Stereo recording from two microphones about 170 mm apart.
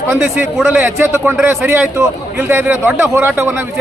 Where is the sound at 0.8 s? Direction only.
15° right (ahead or behind).